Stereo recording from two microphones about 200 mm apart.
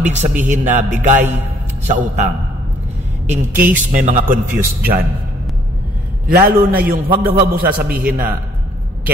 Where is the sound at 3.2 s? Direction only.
40° right (ahead or behind).